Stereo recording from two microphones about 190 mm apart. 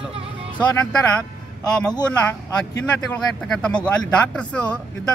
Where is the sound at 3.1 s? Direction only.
5° left (ahead or behind).